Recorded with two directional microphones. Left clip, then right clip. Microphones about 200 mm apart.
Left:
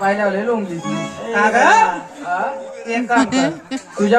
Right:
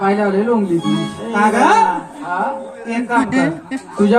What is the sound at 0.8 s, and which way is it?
Speech, 5° left (ahead or behind).